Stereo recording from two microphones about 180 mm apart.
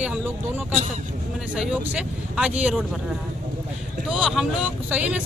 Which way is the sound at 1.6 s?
5° right (ahead or behind).